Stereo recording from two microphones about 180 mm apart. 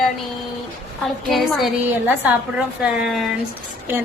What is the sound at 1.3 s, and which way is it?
A woman's voice, centre (ahead or behind).